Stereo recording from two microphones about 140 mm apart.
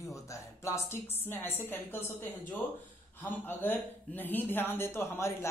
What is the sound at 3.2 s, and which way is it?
A woman's voice, 15° left (ahead or behind).